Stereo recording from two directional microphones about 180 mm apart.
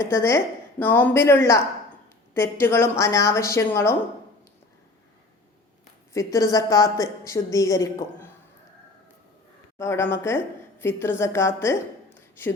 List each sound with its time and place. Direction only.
0.0 s a woman's voice: 15° left (ahead or behind)
6.1 s a woman's voice: 20° left (ahead or behind)
9.7 s a woman's voice: 15° left (ahead or behind)